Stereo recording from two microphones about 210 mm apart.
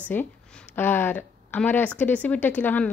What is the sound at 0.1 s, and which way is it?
Speech, 10° left (ahead or behind).